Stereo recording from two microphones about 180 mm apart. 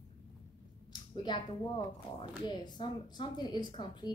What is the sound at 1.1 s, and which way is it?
A woman's voice, 25° left (ahead or behind).